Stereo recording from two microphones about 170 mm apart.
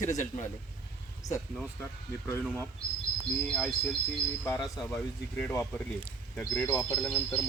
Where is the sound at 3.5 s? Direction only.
Centre (ahead or behind).